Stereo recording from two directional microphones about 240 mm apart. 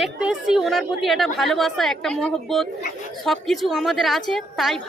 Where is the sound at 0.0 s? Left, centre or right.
Centre.